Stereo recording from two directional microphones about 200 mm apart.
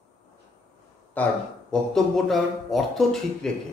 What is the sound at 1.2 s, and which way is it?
Speech, 10° left (ahead or behind).